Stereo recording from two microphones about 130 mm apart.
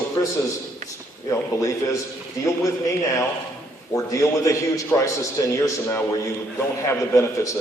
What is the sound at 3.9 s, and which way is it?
A man's voice, 25° left (ahead or behind).